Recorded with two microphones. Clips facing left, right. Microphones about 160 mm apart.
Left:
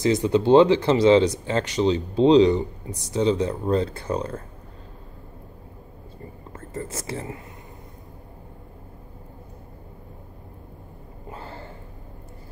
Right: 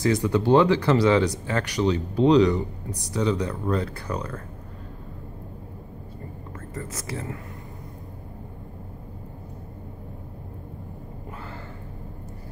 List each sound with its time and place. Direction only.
0.0 s speech: 20° left (ahead or behind)
6.7 s speech: 25° left (ahead or behind)
11.3 s a sound: 30° left (ahead or behind)